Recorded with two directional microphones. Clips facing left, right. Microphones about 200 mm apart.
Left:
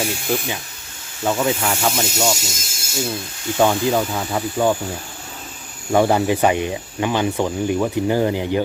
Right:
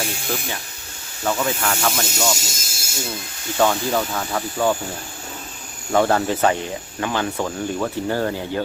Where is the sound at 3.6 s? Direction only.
15° left (ahead or behind).